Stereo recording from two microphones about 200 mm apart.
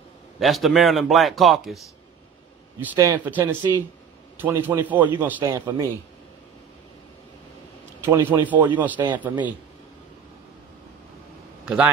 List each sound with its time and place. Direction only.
0.4 s a man's voice: centre (ahead or behind)
2.8 s a man's voice: 10° right (ahead or behind)
5.4 s speech: 20° right (ahead or behind)
8.0 s a man's voice: 10° right (ahead or behind)
11.6 s speech: 5° right (ahead or behind)